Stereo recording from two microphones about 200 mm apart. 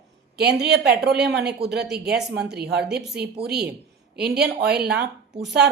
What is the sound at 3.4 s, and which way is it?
Speech, 55° right (ahead or behind).